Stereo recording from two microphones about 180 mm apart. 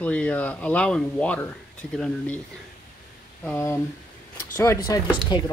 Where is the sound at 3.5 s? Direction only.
15° left (ahead or behind).